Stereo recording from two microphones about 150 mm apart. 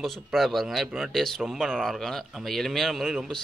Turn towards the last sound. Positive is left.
turn(degrees=0)  # may be behind; listen again after turning